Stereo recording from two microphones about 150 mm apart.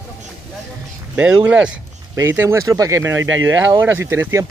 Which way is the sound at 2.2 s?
20° right (ahead or behind).